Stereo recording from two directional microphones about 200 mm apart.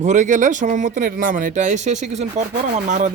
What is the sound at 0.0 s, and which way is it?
A man's voice, 35° right (ahead or behind).